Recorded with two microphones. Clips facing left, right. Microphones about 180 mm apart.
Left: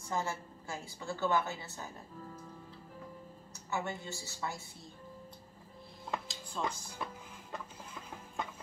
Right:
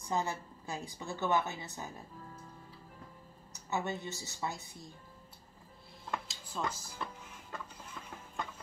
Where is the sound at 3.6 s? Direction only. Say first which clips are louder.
Right 2 dB; 20° right (ahead or behind).